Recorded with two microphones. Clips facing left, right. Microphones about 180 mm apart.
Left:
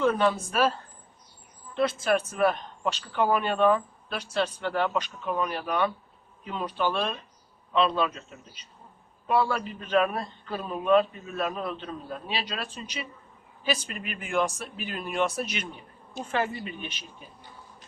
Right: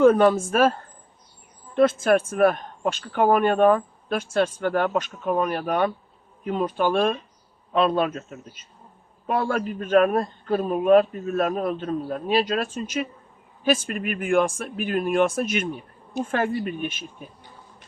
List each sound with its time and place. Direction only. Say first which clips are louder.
0.0 s speech: right 8 dB; 50° right (ahead or behind)